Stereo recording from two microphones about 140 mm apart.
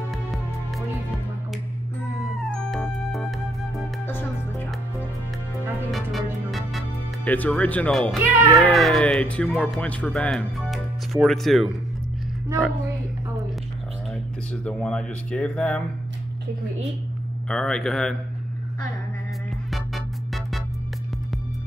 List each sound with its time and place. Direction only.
0.1 s music: centre (ahead or behind)
2.4 s music: centre (ahead or behind)
4.1 s music: 15° left (ahead or behind)
5.9 s music: centre (ahead or behind)
7.2 s speech: 10° left (ahead or behind)
14.5 s speech: 10° left (ahead or behind)
17.5 s speech: 5° left (ahead or behind)
19.7 s music: centre (ahead or behind)